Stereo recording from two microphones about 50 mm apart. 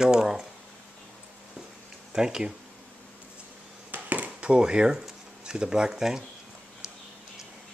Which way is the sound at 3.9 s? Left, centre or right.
Right.